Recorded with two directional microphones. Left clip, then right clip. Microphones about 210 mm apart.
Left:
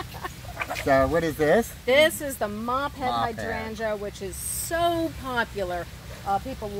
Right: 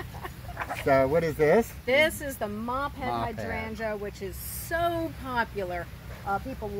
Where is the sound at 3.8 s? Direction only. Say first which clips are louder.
Left 5 dB; 25° left (ahead or behind).